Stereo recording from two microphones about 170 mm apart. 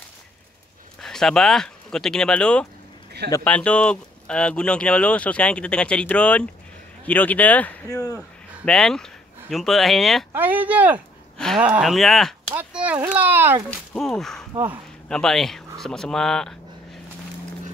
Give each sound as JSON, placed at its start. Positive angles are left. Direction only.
{"t": 1.0, "sound": "speech", "side_deg": 5}
{"t": 7.9, "sound": "speech", "side_deg": 20}
{"t": 8.6, "sound": "speech", "side_deg": 5}
{"t": 10.3, "sound": "speech", "side_deg": -10}
{"t": 12.5, "sound": "speech", "side_deg": -10}
{"t": 13.7, "sound": "speech", "side_deg": 5}